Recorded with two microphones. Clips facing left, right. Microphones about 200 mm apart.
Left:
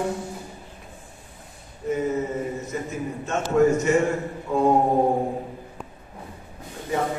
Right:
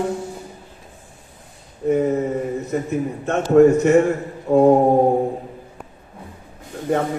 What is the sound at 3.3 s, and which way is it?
Speech, 60° right (ahead or behind).